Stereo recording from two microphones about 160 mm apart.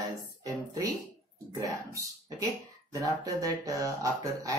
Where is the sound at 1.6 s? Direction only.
25° right (ahead or behind).